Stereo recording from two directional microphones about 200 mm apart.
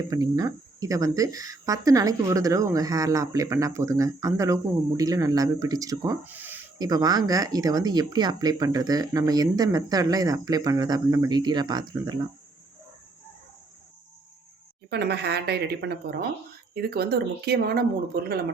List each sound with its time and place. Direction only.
0.1 s speech: 20° right (ahead or behind)
14.8 s speech: 55° right (ahead or behind)